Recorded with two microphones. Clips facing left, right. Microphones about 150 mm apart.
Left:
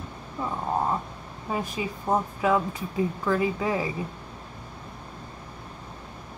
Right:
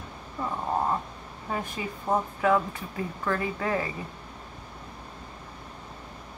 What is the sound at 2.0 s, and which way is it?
Speech, 15° left (ahead or behind).